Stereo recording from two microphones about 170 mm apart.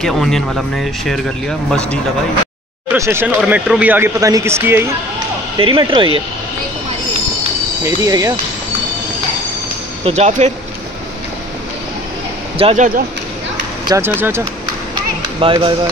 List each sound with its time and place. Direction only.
0.0 s speech: centre (ahead or behind)
2.9 s speech: 15° right (ahead or behind)
5.6 s speech: 30° right (ahead or behind)
7.8 s speech: 20° right (ahead or behind)
10.0 s speech: 40° right (ahead or behind)
12.5 s speech: 35° right (ahead or behind)
13.8 s speech: 15° right (ahead or behind)
15.4 s speech: 30° right (ahead or behind)